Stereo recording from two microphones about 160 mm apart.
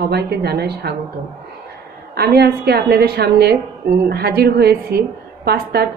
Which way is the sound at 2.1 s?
75° right (ahead or behind).